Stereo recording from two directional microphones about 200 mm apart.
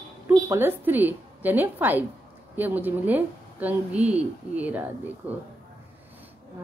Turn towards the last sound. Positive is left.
turn(degrees=-10)  # may be behind; listen again after turning